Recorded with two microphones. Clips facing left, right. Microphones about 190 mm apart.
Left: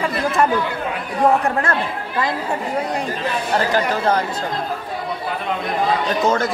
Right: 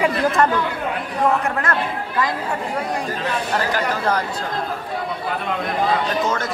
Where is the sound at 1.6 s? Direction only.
30° left (ahead or behind).